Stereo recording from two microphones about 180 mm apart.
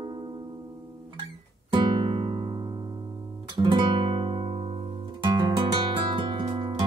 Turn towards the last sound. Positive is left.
turn(degrees=-30)  # may be behind; listen again after turning